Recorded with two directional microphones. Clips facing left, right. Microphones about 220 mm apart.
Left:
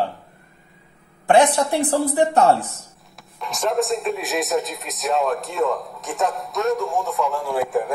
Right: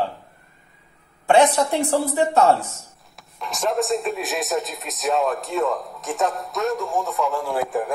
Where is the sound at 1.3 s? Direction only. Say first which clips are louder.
Even; 15° left (ahead or behind).